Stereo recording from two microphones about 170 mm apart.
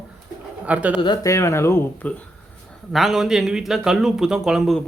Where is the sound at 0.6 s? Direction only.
10° right (ahead or behind).